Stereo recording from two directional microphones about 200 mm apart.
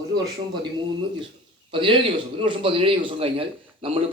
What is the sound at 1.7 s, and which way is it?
A man's voice, 25° right (ahead or behind).